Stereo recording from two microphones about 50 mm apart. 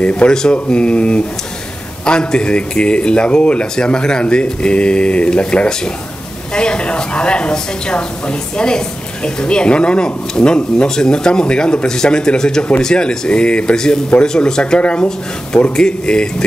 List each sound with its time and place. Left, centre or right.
0.0 s speech: left